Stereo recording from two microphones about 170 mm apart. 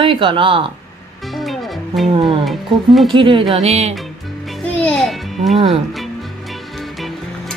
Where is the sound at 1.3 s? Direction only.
Centre (ahead or behind).